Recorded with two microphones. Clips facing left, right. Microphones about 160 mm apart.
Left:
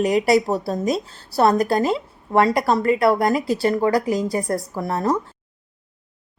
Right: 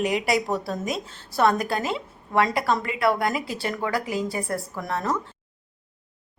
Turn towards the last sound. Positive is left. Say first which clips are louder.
# left 5 dB
turn(degrees=30)  # may be behind; listen again after turning